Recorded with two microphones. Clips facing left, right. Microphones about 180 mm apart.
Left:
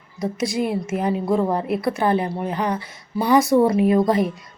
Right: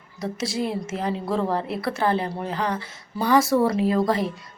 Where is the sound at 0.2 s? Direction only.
15° left (ahead or behind).